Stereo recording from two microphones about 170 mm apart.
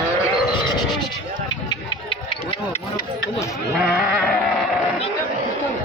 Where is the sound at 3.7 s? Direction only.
Centre (ahead or behind).